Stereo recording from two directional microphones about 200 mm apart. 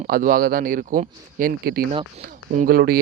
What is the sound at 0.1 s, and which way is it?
Speech, 45° right (ahead or behind).